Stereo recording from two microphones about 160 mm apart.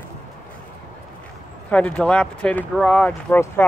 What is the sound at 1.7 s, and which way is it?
Speech, 10° left (ahead or behind).